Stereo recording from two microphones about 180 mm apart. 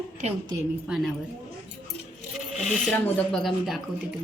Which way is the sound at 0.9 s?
5° right (ahead or behind).